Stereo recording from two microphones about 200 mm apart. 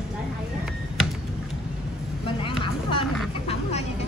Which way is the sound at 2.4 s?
25° left (ahead or behind).